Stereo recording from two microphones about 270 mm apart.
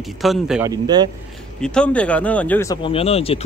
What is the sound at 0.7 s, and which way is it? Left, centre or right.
Speech, centre.